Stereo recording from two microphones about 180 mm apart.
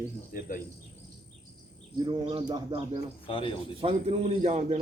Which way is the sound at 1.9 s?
25° right (ahead or behind).